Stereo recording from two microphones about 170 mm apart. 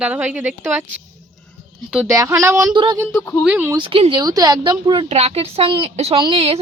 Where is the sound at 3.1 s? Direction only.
10° left (ahead or behind).